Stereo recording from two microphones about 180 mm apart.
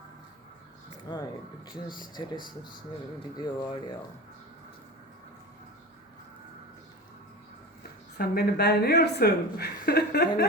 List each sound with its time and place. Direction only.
1.1 s speech: 20° left (ahead or behind)
8.2 s a woman's voice: 60° left (ahead or behind)